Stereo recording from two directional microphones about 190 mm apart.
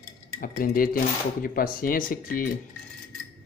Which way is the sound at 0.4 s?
50° left (ahead or behind).